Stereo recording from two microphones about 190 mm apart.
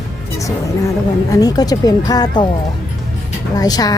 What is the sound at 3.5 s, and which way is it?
Speech, 20° left (ahead or behind).